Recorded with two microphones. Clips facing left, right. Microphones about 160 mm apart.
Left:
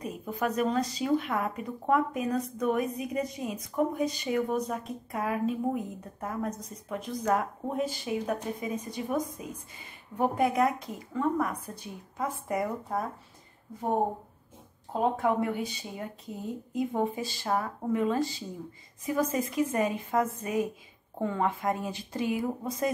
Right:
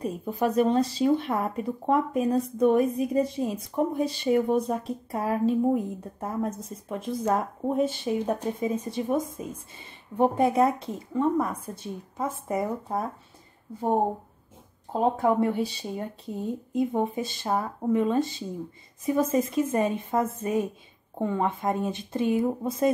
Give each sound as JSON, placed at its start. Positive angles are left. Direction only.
{"t": 0.0, "sound": "speech", "side_deg": -30}
{"t": 14.9, "sound": "speech", "side_deg": -30}